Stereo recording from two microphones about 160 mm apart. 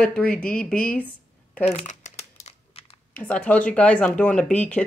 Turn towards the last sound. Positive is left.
turn(degrees=5)  # may be behind; listen again after turning